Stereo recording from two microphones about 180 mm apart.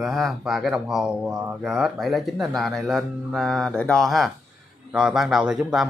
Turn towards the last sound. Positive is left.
turn(degrees=0)  # may be behind; listen again after turning